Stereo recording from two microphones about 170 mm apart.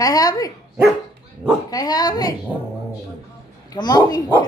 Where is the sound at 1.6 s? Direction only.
20° left (ahead or behind).